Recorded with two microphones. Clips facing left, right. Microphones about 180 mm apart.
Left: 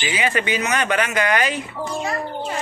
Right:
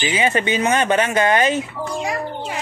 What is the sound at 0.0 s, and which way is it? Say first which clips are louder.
Speech: right 3 dB; 25° right (ahead or behind).